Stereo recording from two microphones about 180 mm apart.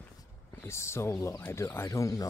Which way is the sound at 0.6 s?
15° left (ahead or behind).